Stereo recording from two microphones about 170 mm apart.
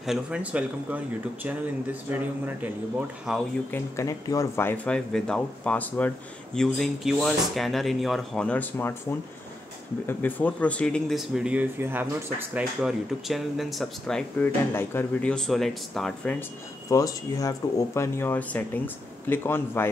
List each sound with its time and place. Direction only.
0.0 s speech: 5° right (ahead or behind)
3.7 s speech: 15° left (ahead or behind)
10.0 s speech: 10° left (ahead or behind)
16.9 s speech: 20° left (ahead or behind)